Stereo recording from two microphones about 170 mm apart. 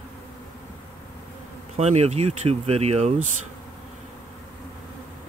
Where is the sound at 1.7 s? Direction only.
40° right (ahead or behind).